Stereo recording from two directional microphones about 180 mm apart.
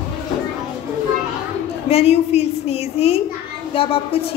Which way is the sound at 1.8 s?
35° left (ahead or behind).